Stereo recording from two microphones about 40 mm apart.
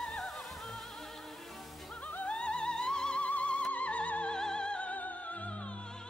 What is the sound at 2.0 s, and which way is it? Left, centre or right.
Music, left.